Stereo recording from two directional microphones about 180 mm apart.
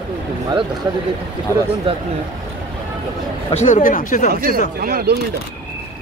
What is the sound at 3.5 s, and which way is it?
Speech, 45° left (ahead or behind).